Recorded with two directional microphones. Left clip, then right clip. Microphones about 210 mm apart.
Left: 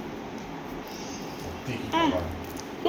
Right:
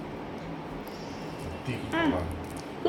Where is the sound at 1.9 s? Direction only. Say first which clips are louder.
Left 3 dB; 15° right (ahead or behind).